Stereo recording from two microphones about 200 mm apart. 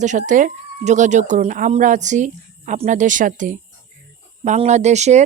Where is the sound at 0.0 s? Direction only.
40° right (ahead or behind).